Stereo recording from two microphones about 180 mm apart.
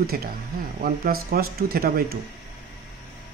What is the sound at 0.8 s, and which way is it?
A man's voice, 55° right (ahead or behind).